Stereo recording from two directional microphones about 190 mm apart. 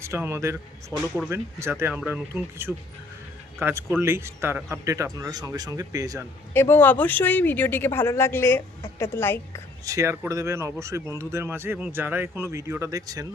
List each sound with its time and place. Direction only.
0.0 s speech: 15° right (ahead or behind)
6.5 s speech: 10° left (ahead or behind)
9.8 s speech: 15° right (ahead or behind)